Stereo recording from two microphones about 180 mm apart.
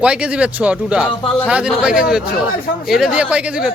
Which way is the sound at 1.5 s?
5° right (ahead or behind).